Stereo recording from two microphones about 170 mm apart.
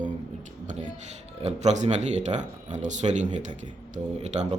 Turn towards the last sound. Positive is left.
turn(degrees=-40)  # may be behind; listen again after turning